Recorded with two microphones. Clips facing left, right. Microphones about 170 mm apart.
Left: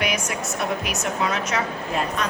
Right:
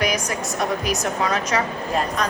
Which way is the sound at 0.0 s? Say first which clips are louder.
Right 2 dB; 40° right (ahead or behind).